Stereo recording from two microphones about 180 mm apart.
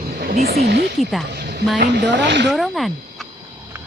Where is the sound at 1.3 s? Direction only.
65° right (ahead or behind).